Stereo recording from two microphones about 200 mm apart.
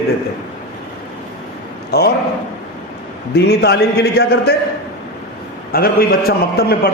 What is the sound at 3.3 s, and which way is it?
A man's voice, 55° left (ahead or behind).